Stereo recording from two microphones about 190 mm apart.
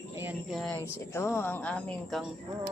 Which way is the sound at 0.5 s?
5° left (ahead or behind).